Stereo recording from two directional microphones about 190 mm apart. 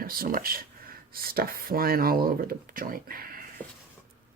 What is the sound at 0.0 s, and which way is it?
Speech, 50° right (ahead or behind).